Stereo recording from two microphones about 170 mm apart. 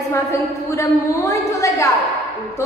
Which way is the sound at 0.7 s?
20° left (ahead or behind).